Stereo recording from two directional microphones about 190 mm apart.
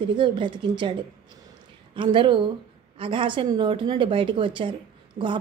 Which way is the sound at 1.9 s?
25° right (ahead or behind).